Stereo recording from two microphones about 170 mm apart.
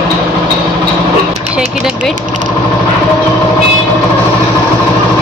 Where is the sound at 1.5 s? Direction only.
5° right (ahead or behind).